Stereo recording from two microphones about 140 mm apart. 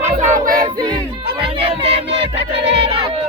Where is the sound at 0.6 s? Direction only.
30° right (ahead or behind).